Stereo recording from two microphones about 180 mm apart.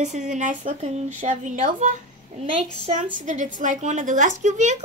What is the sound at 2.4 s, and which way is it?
Speech, 30° right (ahead or behind).